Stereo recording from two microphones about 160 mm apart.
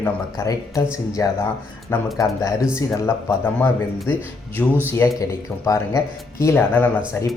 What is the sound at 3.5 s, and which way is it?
A man's voice, 10° left (ahead or behind).